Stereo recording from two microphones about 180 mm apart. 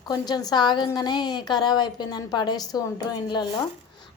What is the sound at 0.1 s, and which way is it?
A woman's voice, 20° left (ahead or behind).